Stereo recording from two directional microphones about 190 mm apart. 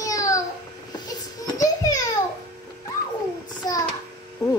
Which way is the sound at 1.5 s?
20° left (ahead or behind).